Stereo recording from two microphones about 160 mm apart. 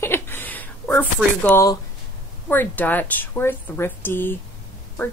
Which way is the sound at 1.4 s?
15° left (ahead or behind).